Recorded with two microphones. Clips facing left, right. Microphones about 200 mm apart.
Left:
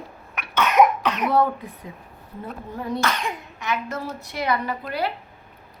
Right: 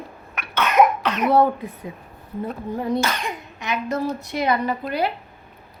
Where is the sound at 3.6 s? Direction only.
15° right (ahead or behind).